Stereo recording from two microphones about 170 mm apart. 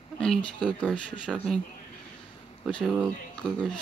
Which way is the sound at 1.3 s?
5° right (ahead or behind).